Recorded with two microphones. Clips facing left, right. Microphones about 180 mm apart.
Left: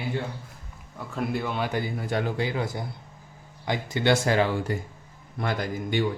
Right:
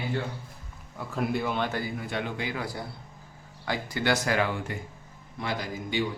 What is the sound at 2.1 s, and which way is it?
Speech, 30° left (ahead or behind).